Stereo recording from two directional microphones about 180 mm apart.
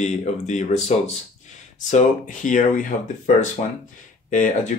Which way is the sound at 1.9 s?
45° left (ahead or behind).